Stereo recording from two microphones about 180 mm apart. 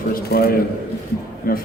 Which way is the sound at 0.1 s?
60° left (ahead or behind).